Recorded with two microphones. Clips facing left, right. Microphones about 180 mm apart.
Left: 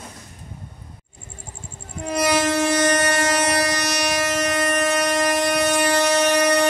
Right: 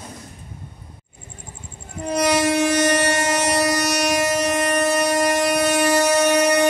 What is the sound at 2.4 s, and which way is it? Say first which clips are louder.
Train: right 1 dB; 15° right (ahead or behind).